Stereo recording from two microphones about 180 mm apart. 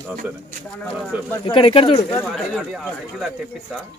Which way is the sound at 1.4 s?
30° left (ahead or behind).